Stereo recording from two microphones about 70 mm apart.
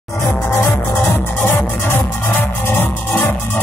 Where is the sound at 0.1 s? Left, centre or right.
Left.